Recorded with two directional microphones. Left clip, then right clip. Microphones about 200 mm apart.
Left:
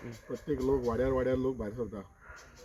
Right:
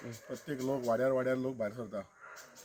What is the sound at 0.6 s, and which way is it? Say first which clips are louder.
Speech: left 1 dB; 40° right (ahead or behind).